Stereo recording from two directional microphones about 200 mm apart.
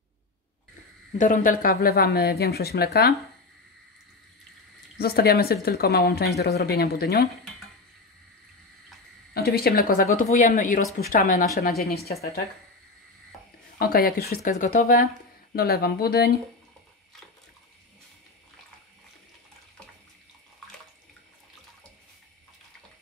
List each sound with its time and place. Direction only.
1.1 s speech: 40° left (ahead or behind)
4.9 s speech: 50° left (ahead or behind)
9.3 s a woman's voice: 50° left (ahead or behind)
13.7 s speech: 50° left (ahead or behind)